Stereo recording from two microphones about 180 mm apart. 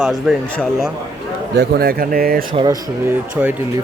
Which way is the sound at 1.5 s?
60° right (ahead or behind).